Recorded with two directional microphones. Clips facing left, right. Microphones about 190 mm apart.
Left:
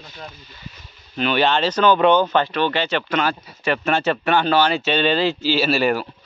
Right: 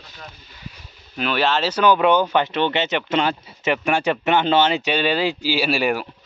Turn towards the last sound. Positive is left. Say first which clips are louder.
# left 2 dB
turn(degrees=-10)  # may be behind; listen again after turning